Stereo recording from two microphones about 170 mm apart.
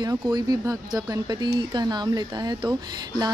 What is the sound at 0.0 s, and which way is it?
Speech, 20° right (ahead or behind).